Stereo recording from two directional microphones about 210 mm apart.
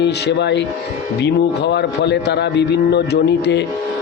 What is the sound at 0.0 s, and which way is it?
A man's voice, 55° left (ahead or behind).